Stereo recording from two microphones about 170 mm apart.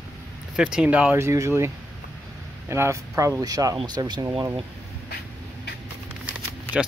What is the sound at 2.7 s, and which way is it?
Speech, 15° right (ahead or behind).